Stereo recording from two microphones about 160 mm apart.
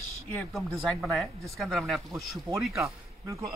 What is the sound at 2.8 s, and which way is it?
Speech, 20° right (ahead or behind).